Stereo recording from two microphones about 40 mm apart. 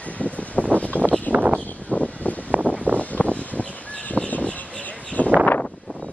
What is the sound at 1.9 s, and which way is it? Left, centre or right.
Vehicle, left.